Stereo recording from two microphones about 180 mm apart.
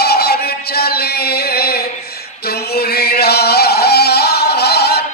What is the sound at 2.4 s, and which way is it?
Music, 60° left (ahead or behind).